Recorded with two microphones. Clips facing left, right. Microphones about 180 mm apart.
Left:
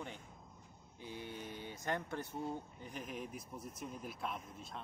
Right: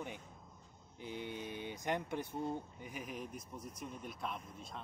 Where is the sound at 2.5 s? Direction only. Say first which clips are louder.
Right 2 dB; 10° right (ahead or behind).